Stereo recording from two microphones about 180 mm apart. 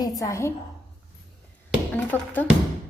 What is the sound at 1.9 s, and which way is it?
Speech, 10° left (ahead or behind).